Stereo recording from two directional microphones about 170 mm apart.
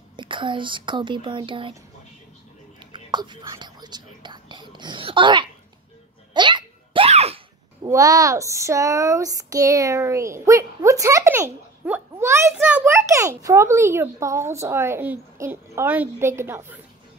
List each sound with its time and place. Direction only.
0.1 s speech: 30° right (ahead or behind)
2.9 s whispering: 25° right (ahead or behind)
6.3 s a sound: 30° right (ahead or behind)
7.8 s speech: 20° right (ahead or behind)